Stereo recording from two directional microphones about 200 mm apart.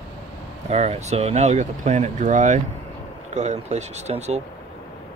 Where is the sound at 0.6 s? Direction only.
35° right (ahead or behind).